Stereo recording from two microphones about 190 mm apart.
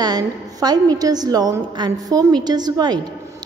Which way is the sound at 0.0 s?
20° right (ahead or behind).